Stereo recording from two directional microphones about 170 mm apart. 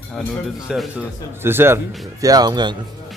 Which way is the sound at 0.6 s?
5° right (ahead or behind).